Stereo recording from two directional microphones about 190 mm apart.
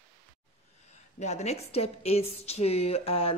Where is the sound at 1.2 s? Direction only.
35° left (ahead or behind).